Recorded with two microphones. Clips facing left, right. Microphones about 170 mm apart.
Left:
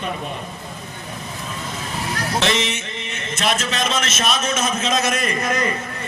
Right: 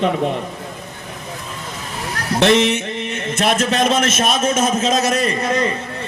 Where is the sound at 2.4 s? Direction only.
60° right (ahead or behind); by 5.7 s 30° right (ahead or behind).